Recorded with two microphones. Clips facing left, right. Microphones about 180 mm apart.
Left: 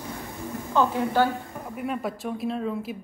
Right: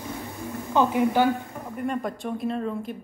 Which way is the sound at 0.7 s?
15° right (ahead or behind).